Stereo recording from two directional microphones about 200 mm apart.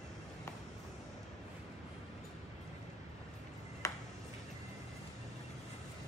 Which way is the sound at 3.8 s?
15° left (ahead or behind).